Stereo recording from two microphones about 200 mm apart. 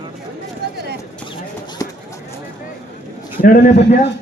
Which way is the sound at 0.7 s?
55° right (ahead or behind).